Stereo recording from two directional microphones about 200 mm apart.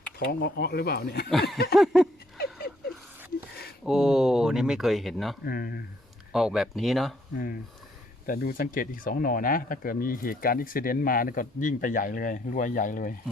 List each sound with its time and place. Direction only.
0.2 s speech: 55° left (ahead or behind)
1.3 s speech: centre (ahead or behind)
3.8 s speech: centre (ahead or behind)
5.5 s speech: 50° left (ahead or behind)
6.3 s speech: centre (ahead or behind)
7.3 s speech: 45° left (ahead or behind)